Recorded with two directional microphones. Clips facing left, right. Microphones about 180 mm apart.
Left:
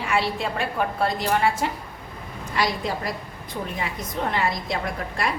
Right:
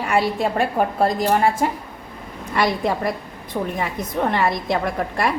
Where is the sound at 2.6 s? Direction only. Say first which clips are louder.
Right 5 dB; 60° right (ahead or behind).